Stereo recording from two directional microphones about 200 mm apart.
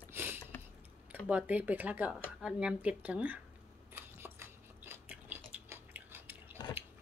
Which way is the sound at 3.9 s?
10° right (ahead or behind).